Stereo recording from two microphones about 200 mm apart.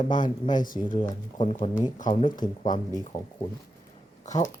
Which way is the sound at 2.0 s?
40° left (ahead or behind).